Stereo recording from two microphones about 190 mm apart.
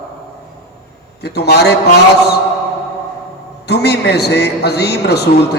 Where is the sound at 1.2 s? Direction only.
60° left (ahead or behind).